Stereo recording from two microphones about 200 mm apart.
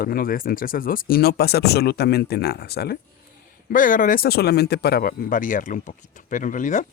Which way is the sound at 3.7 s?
40° left (ahead or behind).